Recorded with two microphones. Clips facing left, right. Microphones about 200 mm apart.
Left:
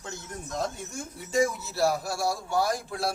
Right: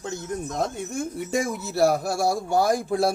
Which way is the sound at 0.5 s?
55° right (ahead or behind).